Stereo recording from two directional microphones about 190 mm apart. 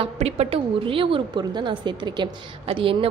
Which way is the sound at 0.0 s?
35° right (ahead or behind).